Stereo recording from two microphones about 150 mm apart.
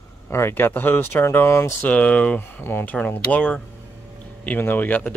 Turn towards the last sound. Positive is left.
turn(degrees=10)  # may be behind; listen again after turning